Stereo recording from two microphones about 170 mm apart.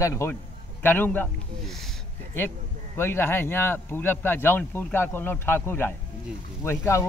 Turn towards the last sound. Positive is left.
turn(degrees=15)  # may be behind; listen again after turning